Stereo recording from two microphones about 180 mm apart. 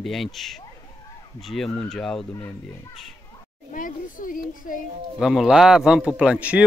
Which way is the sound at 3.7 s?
50° left (ahead or behind).